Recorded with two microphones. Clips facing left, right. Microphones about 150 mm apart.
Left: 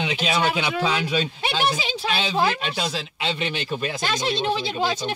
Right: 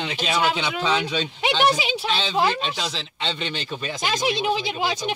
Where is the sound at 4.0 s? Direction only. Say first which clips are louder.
Right 4 dB; 10° right (ahead or behind).